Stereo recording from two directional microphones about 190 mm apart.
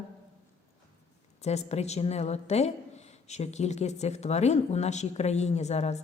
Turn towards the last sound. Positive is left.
turn(degrees=35)  # may be behind; listen again after turning